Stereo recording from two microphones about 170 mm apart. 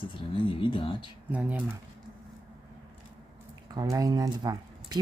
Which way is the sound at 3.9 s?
20° right (ahead or behind).